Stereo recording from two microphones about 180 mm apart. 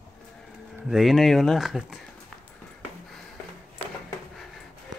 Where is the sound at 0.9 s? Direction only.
Centre (ahead or behind).